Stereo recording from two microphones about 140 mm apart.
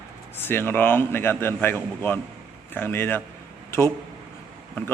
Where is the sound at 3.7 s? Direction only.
20° left (ahead or behind).